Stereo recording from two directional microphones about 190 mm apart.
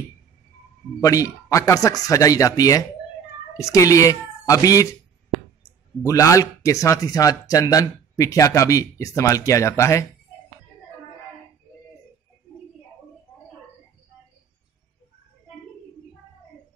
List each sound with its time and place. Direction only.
1.0 s speech: 15° left (ahead or behind)
6.0 s speech: 15° left (ahead or behind)